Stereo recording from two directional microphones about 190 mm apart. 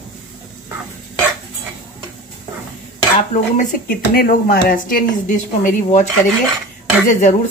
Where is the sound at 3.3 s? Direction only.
45° left (ahead or behind).